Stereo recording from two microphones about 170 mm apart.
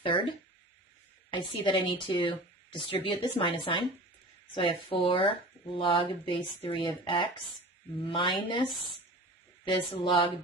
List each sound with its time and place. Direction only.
0.0 s speech: 30° left (ahead or behind)